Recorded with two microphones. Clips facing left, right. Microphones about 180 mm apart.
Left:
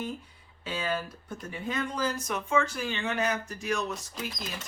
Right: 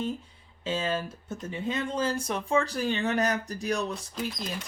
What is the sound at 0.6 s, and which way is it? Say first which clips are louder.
Speech: right 3 dB; 25° right (ahead or behind).